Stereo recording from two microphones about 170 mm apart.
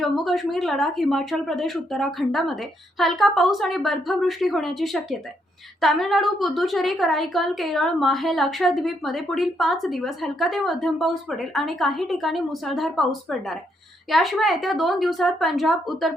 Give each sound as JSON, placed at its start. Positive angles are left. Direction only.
{"t": 0.0, "sound": "a woman's voice", "side_deg": 0}